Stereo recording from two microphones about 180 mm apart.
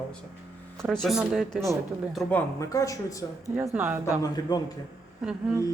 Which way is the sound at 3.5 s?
10° right (ahead or behind).